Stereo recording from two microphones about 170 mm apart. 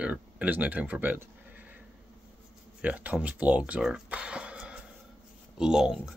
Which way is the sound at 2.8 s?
10° right (ahead or behind).